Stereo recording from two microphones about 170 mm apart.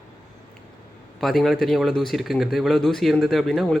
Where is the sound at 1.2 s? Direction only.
Centre (ahead or behind).